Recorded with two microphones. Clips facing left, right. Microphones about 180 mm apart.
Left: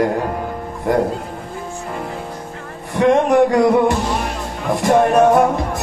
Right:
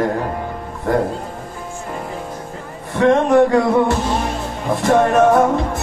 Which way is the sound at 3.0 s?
15° left (ahead or behind).